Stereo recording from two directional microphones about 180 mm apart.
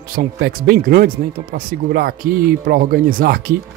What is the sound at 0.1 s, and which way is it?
Speech, 50° right (ahead or behind).